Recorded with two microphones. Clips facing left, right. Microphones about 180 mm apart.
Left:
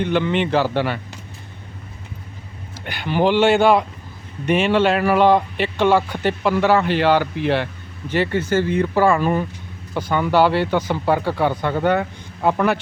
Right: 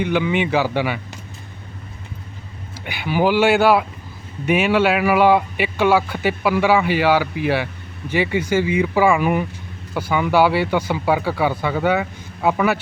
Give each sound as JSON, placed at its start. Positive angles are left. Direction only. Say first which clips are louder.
{"t": 0.0, "sound": "speech", "louder": "even", "side_deg": -10}
{"t": 2.8, "sound": "speech", "louder": "even", "side_deg": -10}